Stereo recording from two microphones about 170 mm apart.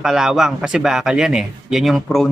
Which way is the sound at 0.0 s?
5° right (ahead or behind).